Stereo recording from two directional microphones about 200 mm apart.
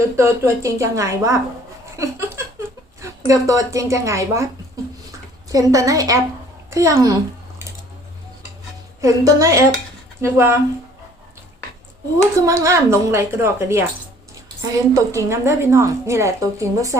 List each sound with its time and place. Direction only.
0.2 s speech: 15° right (ahead or behind)
2.0 s laughter: 15° right (ahead or behind)
3.0 s speech: 15° right (ahead or behind)
5.5 s speech: 15° right (ahead or behind)
9.0 s speech: 15° right (ahead or behind)
12.4 s speech: 15° right (ahead or behind)